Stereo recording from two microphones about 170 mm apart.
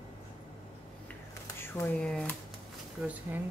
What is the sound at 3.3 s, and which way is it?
Speech, 15° right (ahead or behind).